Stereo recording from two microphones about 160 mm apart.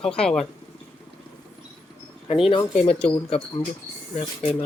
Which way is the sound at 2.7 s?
40° left (ahead or behind).